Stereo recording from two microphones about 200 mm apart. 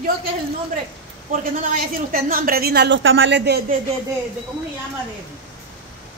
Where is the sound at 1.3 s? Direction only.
45° right (ahead or behind); by 3.6 s 60° right (ahead or behind).